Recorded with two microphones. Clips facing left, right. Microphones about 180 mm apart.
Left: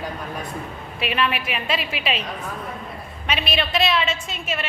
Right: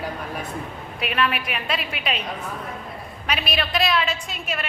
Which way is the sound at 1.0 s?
Centre (ahead or behind).